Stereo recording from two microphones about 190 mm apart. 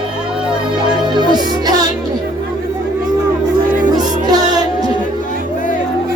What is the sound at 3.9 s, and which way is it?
Music, 20° right (ahead or behind).